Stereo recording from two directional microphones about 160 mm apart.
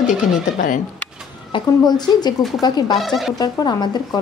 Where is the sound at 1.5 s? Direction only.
25° left (ahead or behind).